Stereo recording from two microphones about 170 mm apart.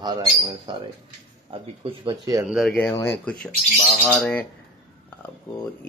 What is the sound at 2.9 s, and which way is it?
Speech, 15° left (ahead or behind).